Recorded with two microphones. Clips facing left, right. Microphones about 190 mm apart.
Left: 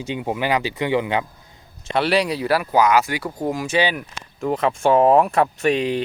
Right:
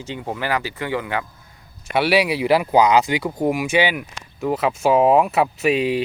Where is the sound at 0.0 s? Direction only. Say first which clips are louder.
Left 3 dB; 15° left (ahead or behind).